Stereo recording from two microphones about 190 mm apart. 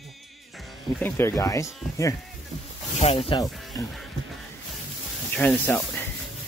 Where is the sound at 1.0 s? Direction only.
15° left (ahead or behind).